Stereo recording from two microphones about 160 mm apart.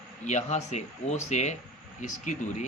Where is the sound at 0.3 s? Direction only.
45° left (ahead or behind).